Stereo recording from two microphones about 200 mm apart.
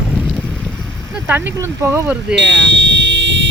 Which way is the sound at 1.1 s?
10° right (ahead or behind).